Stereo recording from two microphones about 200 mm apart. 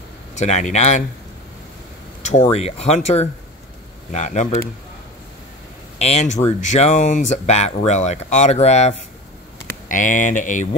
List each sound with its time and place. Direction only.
0.4 s speech: 35° left (ahead or behind)
2.5 s speech: 30° left (ahead or behind)
5.9 s speech: 30° left (ahead or behind)